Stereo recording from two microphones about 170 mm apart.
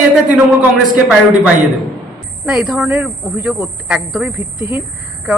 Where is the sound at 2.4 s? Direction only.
Centre (ahead or behind).